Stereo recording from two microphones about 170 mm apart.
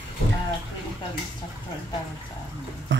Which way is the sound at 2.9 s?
90° right.